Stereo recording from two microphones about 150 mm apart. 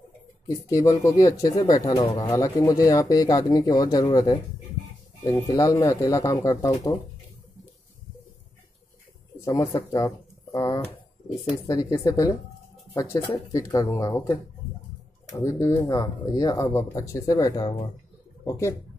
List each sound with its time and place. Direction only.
0.7 s speech: 20° left (ahead or behind)
5.5 s speech: 25° left (ahead or behind)
9.5 s speech: 20° left (ahead or behind)
15.3 s speech: 20° left (ahead or behind)